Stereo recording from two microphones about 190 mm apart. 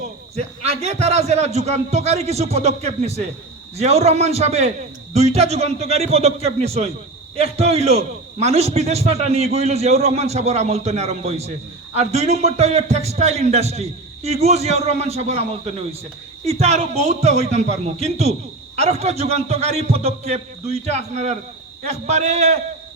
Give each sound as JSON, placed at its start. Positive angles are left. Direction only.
{"t": 0.3, "sound": "a man's voice", "side_deg": -35}